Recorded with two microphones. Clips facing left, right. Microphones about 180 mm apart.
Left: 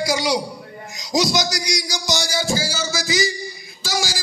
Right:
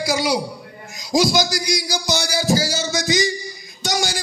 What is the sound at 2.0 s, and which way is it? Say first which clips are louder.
Music: right 1 dB; 60° right (ahead or behind).